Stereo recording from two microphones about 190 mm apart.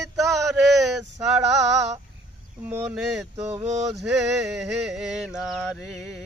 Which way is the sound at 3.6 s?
35° right (ahead or behind).